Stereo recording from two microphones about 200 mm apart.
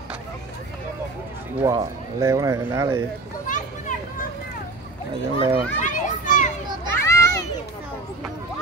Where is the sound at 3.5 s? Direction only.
40° left (ahead or behind).